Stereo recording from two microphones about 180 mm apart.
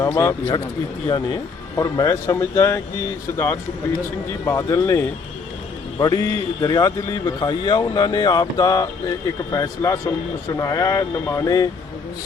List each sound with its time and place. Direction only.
0.0 s a man's voice: 15° left (ahead or behind)